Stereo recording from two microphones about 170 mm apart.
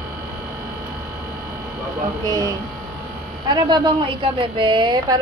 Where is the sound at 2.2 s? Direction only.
25° right (ahead or behind).